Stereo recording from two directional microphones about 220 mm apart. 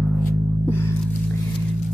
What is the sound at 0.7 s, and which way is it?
Music, 10° left (ahead or behind).